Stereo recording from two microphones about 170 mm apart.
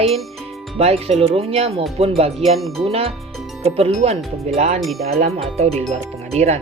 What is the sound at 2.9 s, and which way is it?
Speech, 35° right (ahead or behind).